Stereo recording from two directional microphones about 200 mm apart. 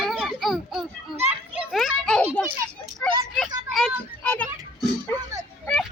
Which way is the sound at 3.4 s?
Centre (ahead or behind).